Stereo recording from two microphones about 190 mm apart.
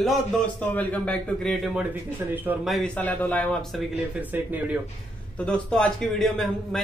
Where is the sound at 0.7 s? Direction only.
10° left (ahead or behind).